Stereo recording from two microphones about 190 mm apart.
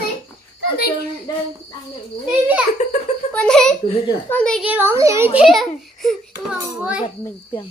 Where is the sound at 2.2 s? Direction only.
5° right (ahead or behind).